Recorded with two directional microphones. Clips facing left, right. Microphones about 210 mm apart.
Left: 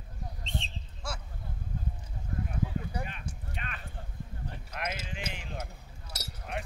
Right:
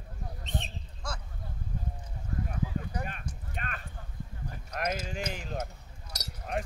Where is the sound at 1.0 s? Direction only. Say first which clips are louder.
Even; 5° left (ahead or behind).